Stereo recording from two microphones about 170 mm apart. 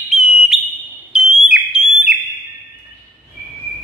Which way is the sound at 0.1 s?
5° right (ahead or behind).